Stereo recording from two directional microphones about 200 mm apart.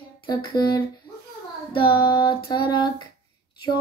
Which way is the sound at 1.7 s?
25° left (ahead or behind).